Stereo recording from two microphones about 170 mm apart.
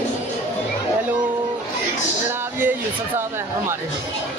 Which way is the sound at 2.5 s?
10° right (ahead or behind).